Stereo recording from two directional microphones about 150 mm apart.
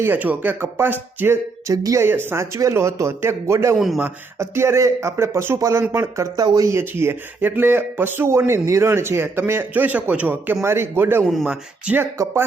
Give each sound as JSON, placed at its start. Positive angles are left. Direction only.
{"t": 0.0, "sound": "speech", "side_deg": -10}
{"t": 3.8, "sound": "speech", "side_deg": 0}
{"t": 4.0, "sound": "speech", "side_deg": -15}
{"t": 12.1, "sound": "speech", "side_deg": -20}